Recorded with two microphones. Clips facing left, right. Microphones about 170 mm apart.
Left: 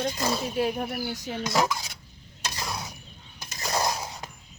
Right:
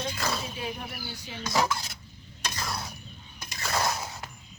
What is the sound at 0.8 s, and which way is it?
Speech, 45° left (ahead or behind).